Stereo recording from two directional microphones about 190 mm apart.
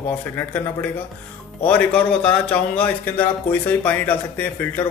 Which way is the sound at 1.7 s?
5° left (ahead or behind).